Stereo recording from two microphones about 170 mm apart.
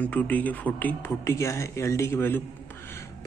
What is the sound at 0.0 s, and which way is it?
Speech, 10° left (ahead or behind).